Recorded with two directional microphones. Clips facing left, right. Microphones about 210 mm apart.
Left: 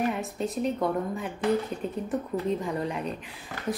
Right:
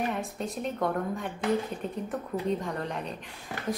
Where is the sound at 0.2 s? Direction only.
Centre (ahead or behind).